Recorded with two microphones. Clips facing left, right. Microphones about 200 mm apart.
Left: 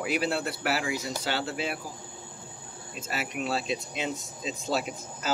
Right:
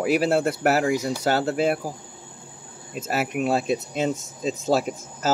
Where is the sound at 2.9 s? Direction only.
50° right (ahead or behind).